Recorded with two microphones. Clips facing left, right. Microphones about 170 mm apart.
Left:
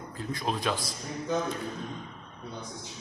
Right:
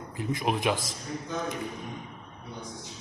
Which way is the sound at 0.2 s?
15° right (ahead or behind).